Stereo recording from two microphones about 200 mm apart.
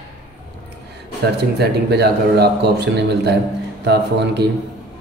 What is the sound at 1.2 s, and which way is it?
A man's voice, 55° right (ahead or behind).